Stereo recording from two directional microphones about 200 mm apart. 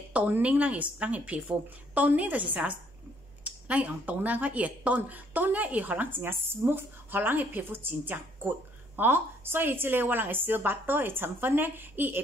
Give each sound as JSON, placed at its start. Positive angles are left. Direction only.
{"t": 0.1, "sound": "speech", "side_deg": -5}